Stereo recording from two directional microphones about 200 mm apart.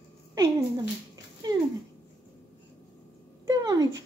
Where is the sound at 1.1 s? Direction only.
20° right (ahead or behind).